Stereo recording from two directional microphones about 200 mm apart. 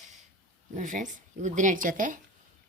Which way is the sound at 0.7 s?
40° right (ahead or behind).